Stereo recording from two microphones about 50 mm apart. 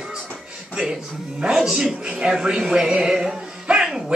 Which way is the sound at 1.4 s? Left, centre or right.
Centre.